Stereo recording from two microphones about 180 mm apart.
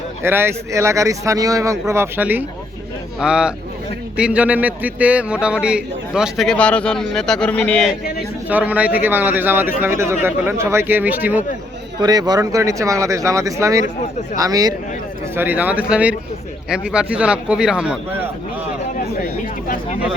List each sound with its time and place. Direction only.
0.2 s a man's voice: 10° right (ahead or behind); by 7.9 s 5° left (ahead or behind)
8.4 s speech: 10° right (ahead or behind)
11.9 s a man's voice: 20° right (ahead or behind)
15.4 s a man's voice: 10° right (ahead or behind)
19.6 s speech: 50° left (ahead or behind)